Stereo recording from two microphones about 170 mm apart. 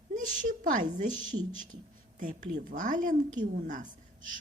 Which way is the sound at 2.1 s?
50° right (ahead or behind).